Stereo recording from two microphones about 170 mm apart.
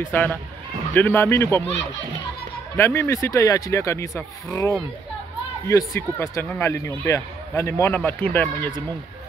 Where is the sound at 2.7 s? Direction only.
15° left (ahead or behind).